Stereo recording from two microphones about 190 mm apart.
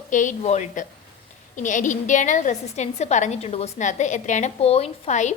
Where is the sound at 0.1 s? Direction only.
40° left (ahead or behind).